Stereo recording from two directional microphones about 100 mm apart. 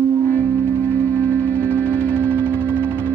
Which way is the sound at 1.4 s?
25° right (ahead or behind).